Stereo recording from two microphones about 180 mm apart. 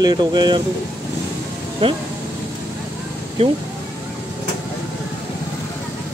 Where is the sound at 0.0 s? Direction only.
25° right (ahead or behind).